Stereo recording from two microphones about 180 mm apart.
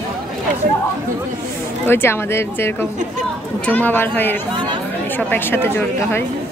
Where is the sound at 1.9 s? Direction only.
15° left (ahead or behind).